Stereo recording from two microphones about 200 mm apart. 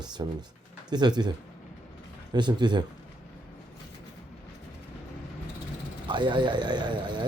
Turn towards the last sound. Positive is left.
turn(degrees=-20)  # may be behind; listen again after turning